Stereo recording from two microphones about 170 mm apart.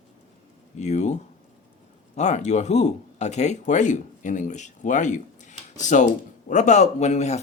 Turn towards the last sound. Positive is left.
turn(degrees=40)  # may be behind; listen again after turning